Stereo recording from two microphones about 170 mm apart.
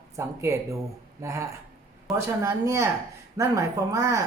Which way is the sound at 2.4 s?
15° right (ahead or behind).